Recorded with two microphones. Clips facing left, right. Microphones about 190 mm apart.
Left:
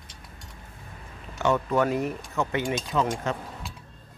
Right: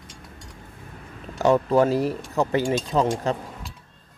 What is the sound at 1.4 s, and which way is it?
Speech, 35° right (ahead or behind).